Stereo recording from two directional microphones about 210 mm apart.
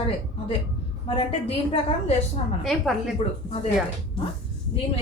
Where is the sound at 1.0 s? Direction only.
25° left (ahead or behind).